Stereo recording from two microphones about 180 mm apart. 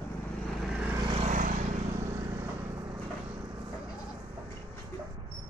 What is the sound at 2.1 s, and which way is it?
Vehicle, 15° right (ahead or behind).